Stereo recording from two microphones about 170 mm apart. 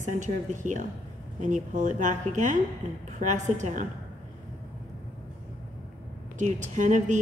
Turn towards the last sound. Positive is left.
turn(degrees=-45)  # may be behind; listen again after turning